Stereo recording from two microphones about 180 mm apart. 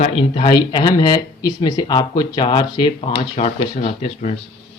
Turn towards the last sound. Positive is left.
turn(degrees=40)  # may be behind; listen again after turning